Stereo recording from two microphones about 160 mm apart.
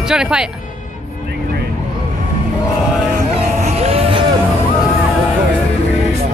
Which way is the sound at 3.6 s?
40° right (ahead or behind).